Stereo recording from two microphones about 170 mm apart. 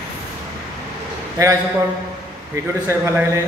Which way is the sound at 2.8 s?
15° right (ahead or behind).